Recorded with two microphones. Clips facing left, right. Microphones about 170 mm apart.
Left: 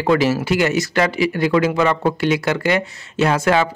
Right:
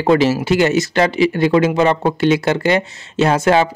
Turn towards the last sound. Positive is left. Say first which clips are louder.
# right 3 dB
turn(degrees=-25)  # may be behind; listen again after turning